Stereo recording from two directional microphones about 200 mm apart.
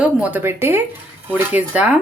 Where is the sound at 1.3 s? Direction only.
5° right (ahead or behind).